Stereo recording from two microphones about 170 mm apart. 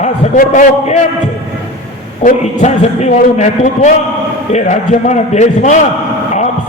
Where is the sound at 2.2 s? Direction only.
45° left (ahead or behind).